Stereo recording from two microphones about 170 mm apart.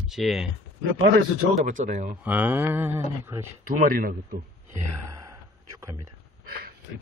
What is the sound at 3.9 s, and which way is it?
Speech, 55° right (ahead or behind).